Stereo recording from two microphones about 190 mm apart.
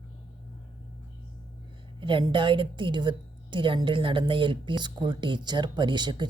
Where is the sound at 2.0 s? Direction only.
25° right (ahead or behind).